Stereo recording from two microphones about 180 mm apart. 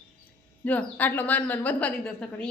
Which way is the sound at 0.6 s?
10° left (ahead or behind).